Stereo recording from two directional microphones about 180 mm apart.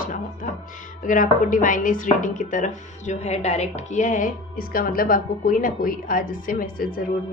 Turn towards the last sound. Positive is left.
turn(degrees=50)  # may be behind; listen again after turning